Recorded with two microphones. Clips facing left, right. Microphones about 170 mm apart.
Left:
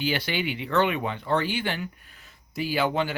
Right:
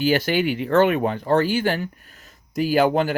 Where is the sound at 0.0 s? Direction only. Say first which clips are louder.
Right 8 dB; 45° right (ahead or behind).